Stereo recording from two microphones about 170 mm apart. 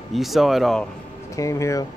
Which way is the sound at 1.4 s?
20° left (ahead or behind).